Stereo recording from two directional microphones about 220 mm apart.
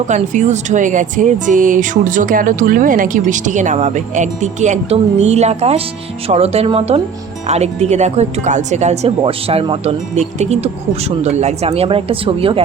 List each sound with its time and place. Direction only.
0.1 s speech: 30° right (ahead or behind)